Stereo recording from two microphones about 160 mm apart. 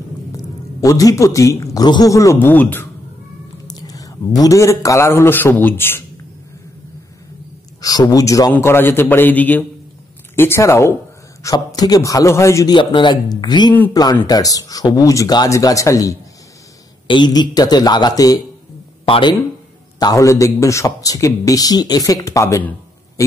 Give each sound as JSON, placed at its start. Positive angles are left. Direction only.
{"t": 0.4, "sound": "a man's voice", "side_deg": 20}
{"t": 3.6, "sound": "speech", "side_deg": 25}
{"t": 7.8, "sound": "a man's voice", "side_deg": 25}
{"t": 12.7, "sound": "a man's voice", "side_deg": 30}
{"t": 19.0, "sound": "speech", "side_deg": 35}
{"t": 20.0, "sound": "a man's voice", "side_deg": 20}